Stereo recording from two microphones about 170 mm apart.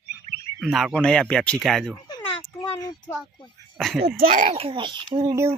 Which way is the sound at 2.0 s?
25° left (ahead or behind).